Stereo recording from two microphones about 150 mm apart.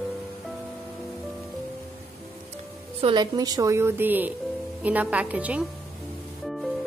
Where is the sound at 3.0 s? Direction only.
30° right (ahead or behind); by 5.7 s 10° right (ahead or behind).